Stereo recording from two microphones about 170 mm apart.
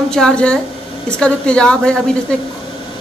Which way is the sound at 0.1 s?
5° left (ahead or behind).